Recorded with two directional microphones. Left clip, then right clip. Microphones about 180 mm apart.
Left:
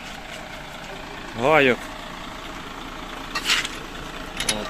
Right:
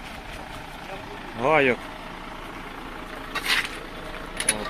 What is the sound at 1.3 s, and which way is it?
Speech, 30° left (ahead or behind).